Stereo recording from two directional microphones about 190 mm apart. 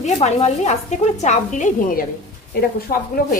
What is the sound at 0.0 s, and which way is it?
A woman's voice, 35° left (ahead or behind).